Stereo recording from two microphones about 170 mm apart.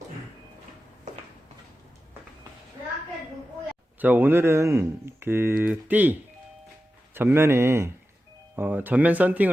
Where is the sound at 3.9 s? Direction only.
10° right (ahead or behind).